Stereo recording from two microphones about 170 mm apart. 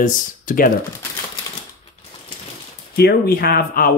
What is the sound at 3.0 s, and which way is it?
Speech, 65° left (ahead or behind).